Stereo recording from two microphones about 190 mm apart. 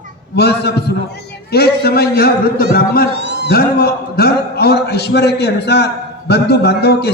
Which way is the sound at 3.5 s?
55° left (ahead or behind).